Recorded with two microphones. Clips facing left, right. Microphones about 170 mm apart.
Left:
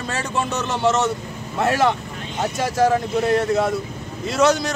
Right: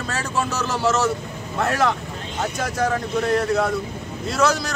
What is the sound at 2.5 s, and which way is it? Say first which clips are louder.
Speech: left 6 dB; centre (ahead or behind).